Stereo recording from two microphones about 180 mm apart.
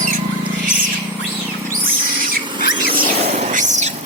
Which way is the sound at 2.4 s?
25° right (ahead or behind).